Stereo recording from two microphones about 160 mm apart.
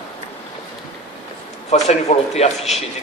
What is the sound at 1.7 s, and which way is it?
A man's voice, 45° left (ahead or behind).